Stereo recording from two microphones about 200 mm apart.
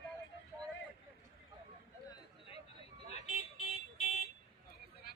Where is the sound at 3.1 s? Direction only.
30° left (ahead or behind).